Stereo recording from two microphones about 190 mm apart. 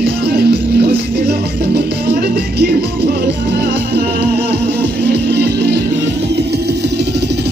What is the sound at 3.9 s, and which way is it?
Music, 60° right (ahead or behind).